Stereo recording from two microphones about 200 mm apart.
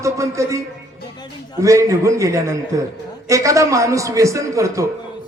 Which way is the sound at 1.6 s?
15° right (ahead or behind).